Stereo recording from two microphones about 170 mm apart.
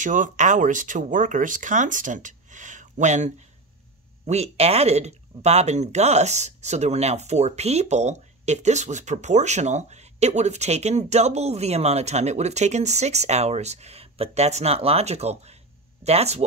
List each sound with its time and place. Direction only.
0.0 s speech: 50° right (ahead or behind)